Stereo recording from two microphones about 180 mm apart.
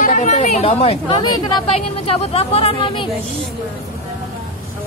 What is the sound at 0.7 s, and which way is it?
Speech, 30° left (ahead or behind).